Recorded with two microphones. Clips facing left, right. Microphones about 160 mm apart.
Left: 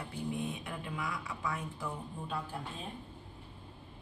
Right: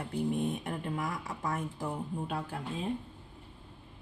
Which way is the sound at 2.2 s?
70° right (ahead or behind).